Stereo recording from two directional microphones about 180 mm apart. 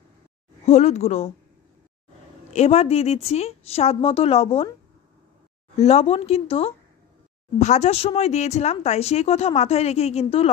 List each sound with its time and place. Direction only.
0.7 s speech: 40° left (ahead or behind)
2.5 s speech: 35° left (ahead or behind)
5.8 s speech: 35° left (ahead or behind)